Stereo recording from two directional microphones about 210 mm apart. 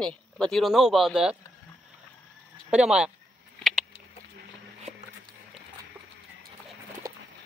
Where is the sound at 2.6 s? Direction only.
5° right (ahead or behind).